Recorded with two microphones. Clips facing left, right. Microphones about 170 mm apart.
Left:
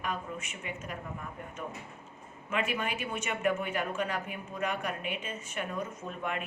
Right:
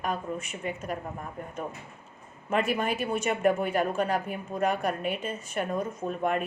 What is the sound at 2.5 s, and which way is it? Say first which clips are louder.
Speech: right 6 dB; 35° right (ahead or behind).